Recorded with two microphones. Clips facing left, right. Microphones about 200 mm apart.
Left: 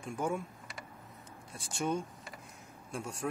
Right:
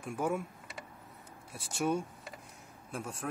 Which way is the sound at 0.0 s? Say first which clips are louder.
Right 1 dB; 5° right (ahead or behind).